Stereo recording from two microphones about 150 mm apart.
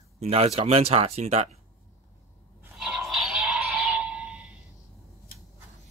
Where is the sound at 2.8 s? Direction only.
5° right (ahead or behind).